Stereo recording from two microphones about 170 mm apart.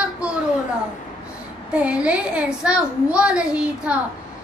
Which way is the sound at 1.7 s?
5° right (ahead or behind).